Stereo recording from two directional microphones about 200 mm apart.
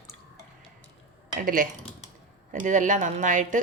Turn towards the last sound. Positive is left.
turn(degrees=-40)  # may be behind; listen again after turning